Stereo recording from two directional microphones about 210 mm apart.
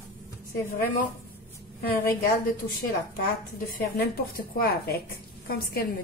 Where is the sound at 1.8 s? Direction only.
45° left (ahead or behind).